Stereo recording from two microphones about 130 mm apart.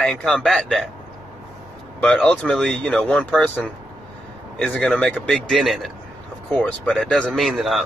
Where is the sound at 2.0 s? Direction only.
10° left (ahead or behind).